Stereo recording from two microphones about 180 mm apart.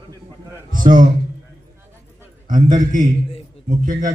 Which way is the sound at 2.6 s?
25° right (ahead or behind).